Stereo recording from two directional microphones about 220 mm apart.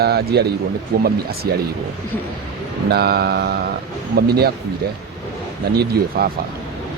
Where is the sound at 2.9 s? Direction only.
45° right (ahead or behind).